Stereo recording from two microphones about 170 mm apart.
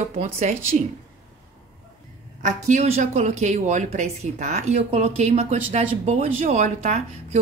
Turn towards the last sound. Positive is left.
turn(degrees=-40)  # may be behind; listen again after turning